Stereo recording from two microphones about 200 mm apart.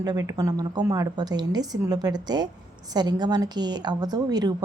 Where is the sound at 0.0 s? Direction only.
20° right (ahead or behind).